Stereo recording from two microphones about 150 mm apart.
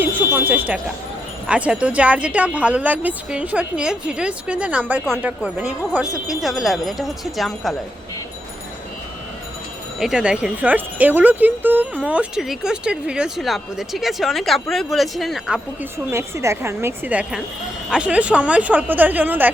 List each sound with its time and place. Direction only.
0.0 s a sound: 10° right (ahead or behind)
0.3 s speech: 10° right (ahead or behind)
10.0 s speech: 5° right (ahead or behind)
16.1 s speech: 20° right (ahead or behind)